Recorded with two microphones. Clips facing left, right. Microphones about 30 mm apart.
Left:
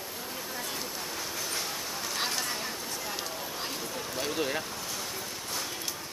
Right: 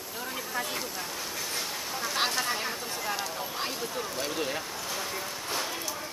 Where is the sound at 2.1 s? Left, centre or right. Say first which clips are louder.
Right 4 dB; centre.